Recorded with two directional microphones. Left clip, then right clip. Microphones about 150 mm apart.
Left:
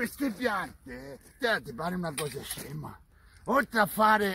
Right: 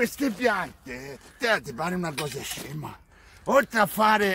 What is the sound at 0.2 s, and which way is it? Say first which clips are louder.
Speech: right 6 dB; 15° right (ahead or behind).